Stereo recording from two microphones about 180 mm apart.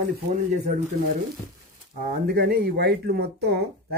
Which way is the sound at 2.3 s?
60° right (ahead or behind).